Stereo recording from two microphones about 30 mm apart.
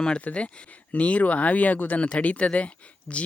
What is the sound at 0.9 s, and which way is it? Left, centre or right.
Speech, left.